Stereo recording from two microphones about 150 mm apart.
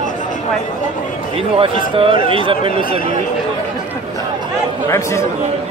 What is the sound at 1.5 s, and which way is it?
Speech, 35° right (ahead or behind).